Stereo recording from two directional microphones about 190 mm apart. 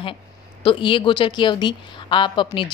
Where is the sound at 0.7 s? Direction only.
25° left (ahead or behind).